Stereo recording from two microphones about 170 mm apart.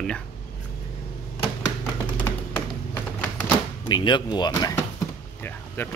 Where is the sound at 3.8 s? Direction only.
25° left (ahead or behind).